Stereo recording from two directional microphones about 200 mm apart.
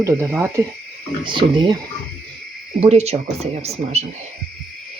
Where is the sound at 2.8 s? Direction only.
30° right (ahead or behind).